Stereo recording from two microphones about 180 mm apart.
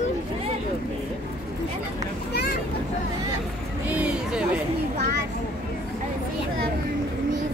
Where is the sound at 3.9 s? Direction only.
5° right (ahead or behind).